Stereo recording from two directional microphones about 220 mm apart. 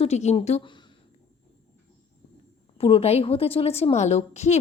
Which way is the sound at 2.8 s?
25° left (ahead or behind).